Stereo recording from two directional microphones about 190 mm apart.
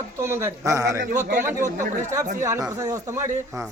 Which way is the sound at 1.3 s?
50° right (ahead or behind).